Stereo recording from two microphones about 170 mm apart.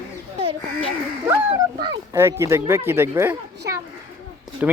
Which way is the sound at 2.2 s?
15° right (ahead or behind).